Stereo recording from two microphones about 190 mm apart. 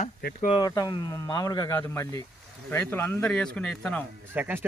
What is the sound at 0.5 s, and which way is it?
Speech, 20° left (ahead or behind).